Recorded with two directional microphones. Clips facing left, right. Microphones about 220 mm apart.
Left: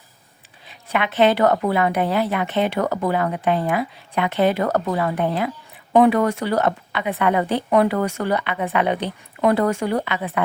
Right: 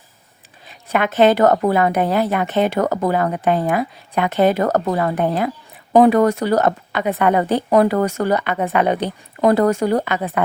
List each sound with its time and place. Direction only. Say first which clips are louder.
0.7 s a woman's voice: right 4 dB; 45° right (ahead or behind)